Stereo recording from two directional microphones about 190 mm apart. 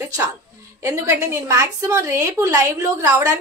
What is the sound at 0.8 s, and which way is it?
A woman's voice, 15° right (ahead or behind).